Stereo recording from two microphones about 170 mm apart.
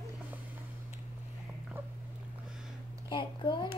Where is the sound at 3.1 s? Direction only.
30° left (ahead or behind).